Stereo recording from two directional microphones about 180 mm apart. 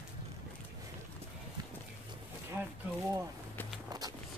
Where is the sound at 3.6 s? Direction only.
10° left (ahead or behind).